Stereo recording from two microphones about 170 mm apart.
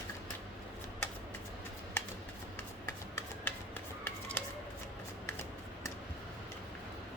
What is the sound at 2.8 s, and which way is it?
Shuffling cards, 15° left (ahead or behind).